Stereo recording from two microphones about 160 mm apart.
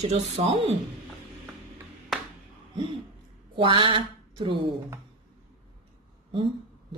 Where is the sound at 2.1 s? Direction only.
Centre (ahead or behind).